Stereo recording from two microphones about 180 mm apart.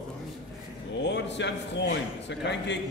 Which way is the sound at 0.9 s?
75° left (ahead or behind).